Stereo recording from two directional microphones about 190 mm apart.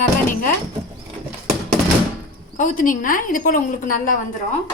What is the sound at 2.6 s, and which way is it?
A woman's voice, 45° left (ahead or behind).